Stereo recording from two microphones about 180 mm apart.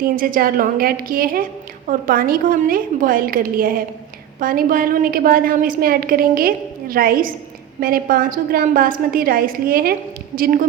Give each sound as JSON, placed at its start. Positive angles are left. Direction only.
{"t": 0.0, "sound": "a woman's voice", "side_deg": -50}